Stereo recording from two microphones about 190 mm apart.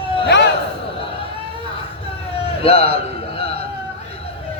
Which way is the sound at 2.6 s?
30° left (ahead or behind).